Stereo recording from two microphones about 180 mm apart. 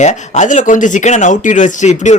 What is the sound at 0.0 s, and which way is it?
Speech, 40° left (ahead or behind).